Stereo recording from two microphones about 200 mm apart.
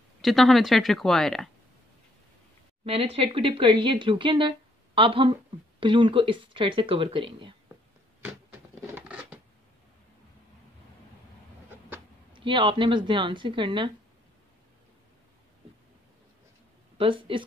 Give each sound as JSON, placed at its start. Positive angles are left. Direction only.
{"t": 0.2, "sound": "a woman's voice", "side_deg": 0}
{"t": 2.8, "sound": "speech", "side_deg": -30}
{"t": 8.2, "sound": "a sound", "side_deg": -10}
{"t": 12.4, "sound": "speech", "side_deg": -25}
{"t": 17.0, "sound": "speech", "side_deg": -25}